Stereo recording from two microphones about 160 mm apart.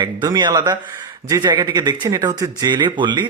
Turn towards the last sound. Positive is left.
turn(degrees=-30)  # may be behind; listen again after turning